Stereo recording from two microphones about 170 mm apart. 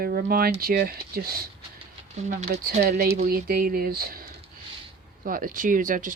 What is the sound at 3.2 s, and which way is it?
Speech, 60° right (ahead or behind).